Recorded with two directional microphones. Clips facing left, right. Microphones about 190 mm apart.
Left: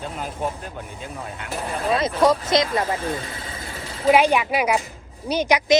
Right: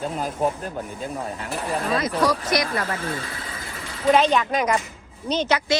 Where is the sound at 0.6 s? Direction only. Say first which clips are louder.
Right 4 dB; 40° right (ahead or behind).